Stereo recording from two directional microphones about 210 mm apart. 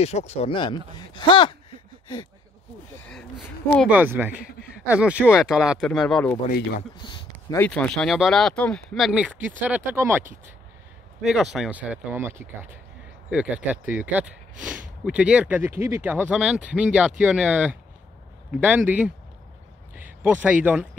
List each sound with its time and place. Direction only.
0.0 s speech: 30° left (ahead or behind)
3.1 s speech: 5° left (ahead or behind)
7.5 s speech: 5° left (ahead or behind); by 10.2 s 10° right (ahead or behind)
11.2 s speech: centre (ahead or behind)
20.0 s a sound: 10° right (ahead or behind)